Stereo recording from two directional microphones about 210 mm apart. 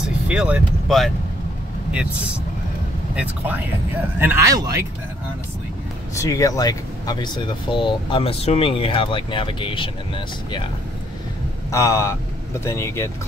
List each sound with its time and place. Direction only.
0.3 s speech: 5° right (ahead or behind)
3.2 s speech: 10° right (ahead or behind)
6.1 s speech: 15° left (ahead or behind)
11.7 s speech: 15° left (ahead or behind)